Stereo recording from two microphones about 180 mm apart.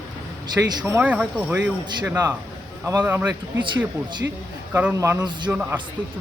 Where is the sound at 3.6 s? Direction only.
25° right (ahead or behind).